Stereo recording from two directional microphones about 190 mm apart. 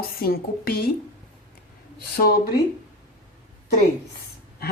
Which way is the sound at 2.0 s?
55° left (ahead or behind).